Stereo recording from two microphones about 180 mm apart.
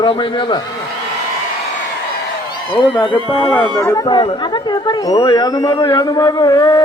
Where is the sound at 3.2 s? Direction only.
30° left (ahead or behind).